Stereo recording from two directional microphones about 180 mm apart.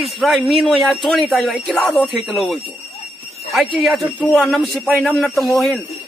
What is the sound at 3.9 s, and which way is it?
Speech, centre (ahead or behind).